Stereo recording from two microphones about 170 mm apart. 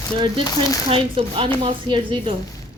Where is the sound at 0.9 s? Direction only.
30° right (ahead or behind).